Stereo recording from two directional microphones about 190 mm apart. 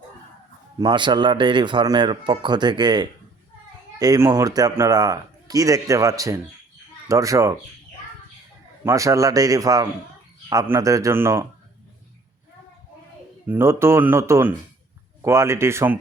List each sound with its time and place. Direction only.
0.8 s a man's voice: 25° right (ahead or behind)
8.8 s a man's voice: 15° right (ahead or behind)
13.5 s a man's voice: 15° right (ahead or behind)